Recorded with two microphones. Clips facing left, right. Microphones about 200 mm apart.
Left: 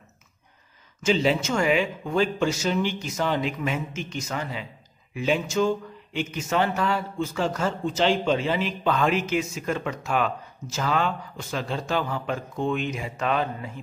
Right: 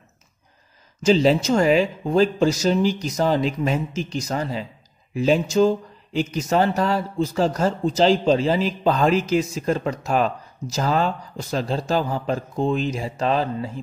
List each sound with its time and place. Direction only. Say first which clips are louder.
1.0 s speech: right 6 dB; 35° right (ahead or behind)